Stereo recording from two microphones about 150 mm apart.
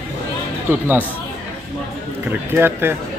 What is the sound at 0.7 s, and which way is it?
Speech, 15° right (ahead or behind).